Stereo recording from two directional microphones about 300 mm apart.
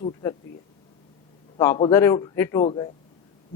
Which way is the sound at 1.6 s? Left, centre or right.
Centre.